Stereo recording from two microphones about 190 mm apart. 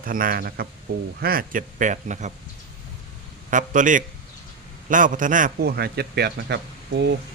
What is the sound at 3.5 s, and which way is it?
A man's voice, 45° right (ahead or behind).